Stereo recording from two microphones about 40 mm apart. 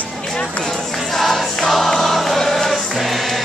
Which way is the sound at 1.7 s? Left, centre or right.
Centre.